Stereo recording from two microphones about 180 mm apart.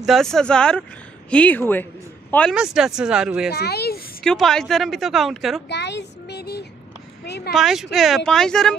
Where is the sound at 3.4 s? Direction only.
65° left (ahead or behind).